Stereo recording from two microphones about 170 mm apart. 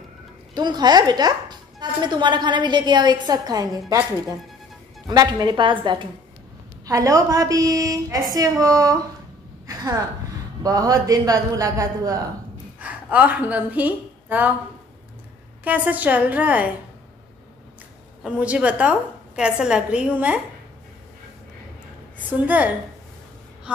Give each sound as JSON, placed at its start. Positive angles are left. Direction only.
{"t": 0.6, "sound": "a woman's voice", "side_deg": -25}
{"t": 5.0, "sound": "a woman's voice", "side_deg": -20}
{"t": 12.8, "sound": "a woman's voice", "side_deg": -10}
{"t": 15.6, "sound": "a woman's voice", "side_deg": -10}
{"t": 18.2, "sound": "a woman's voice", "side_deg": -5}